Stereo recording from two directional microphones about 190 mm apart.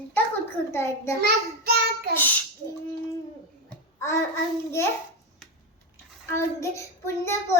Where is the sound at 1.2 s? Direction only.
55° right (ahead or behind).